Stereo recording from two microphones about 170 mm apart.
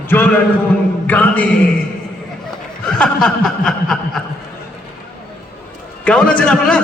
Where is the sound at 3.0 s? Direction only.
5° left (ahead or behind).